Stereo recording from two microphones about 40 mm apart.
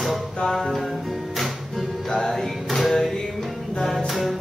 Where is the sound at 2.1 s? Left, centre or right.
Centre.